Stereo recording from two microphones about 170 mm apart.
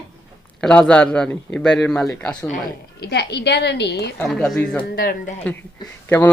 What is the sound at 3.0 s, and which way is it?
A woman's voice, 75° left (ahead or behind).